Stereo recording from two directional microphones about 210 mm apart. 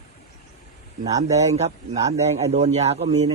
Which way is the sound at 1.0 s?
15° right (ahead or behind).